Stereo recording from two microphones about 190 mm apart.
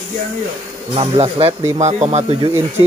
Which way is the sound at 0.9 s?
30° right (ahead or behind).